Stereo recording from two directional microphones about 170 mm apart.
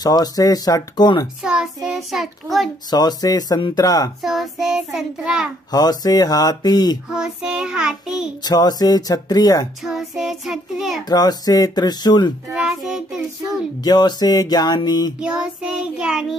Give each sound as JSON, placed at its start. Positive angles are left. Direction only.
{"t": 0.0, "sound": "speech", "side_deg": 25}
{"t": 1.4, "sound": "child singing", "side_deg": -5}
{"t": 2.9, "sound": "speech", "side_deg": 25}
{"t": 4.2, "sound": "child singing", "side_deg": 0}
{"t": 5.7, "sound": "speech", "side_deg": 25}
{"t": 7.1, "sound": "child singing", "side_deg": -5}
{"t": 8.4, "sound": "speech", "side_deg": 25}
{"t": 9.8, "sound": "child singing", "side_deg": -5}
{"t": 11.1, "sound": "speech", "side_deg": 25}
{"t": 12.5, "sound": "child singing", "side_deg": -5}
{"t": 13.8, "sound": "speech", "side_deg": 25}
{"t": 15.1, "sound": "child singing", "side_deg": -5}